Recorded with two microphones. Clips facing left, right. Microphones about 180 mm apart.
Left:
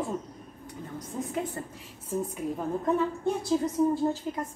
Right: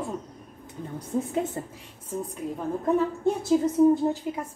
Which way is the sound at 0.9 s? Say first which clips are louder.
Right 5 dB; 30° right (ahead or behind).